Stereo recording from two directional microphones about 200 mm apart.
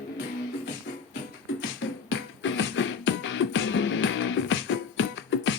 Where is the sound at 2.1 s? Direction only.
65° left (ahead or behind).